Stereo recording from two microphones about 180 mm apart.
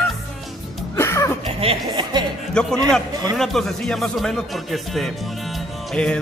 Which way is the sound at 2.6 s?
5° left (ahead or behind).